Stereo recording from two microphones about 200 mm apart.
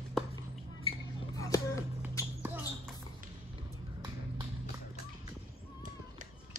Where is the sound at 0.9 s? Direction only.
30° left (ahead or behind).